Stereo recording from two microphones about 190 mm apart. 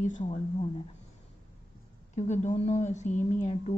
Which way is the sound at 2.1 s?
40° left (ahead or behind).